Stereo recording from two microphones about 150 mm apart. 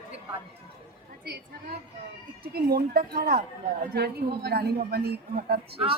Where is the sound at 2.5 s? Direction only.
85° right.